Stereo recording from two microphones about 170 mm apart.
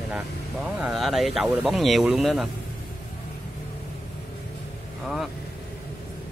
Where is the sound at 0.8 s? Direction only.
Centre (ahead or behind).